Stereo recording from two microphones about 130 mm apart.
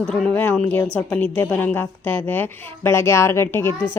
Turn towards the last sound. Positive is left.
turn(degrees=20)  # may be behind; listen again after turning